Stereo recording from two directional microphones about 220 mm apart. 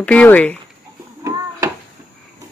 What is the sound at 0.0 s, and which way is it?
Speech, 5° left (ahead or behind).